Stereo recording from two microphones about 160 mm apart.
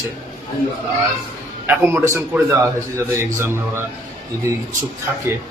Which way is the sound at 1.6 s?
15° right (ahead or behind).